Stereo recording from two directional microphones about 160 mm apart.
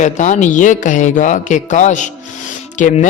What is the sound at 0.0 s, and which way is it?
Speech, 50° left (ahead or behind).